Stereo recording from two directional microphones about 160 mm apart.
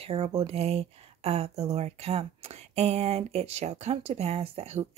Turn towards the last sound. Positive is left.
turn(degrees=-40)  # may be behind; listen again after turning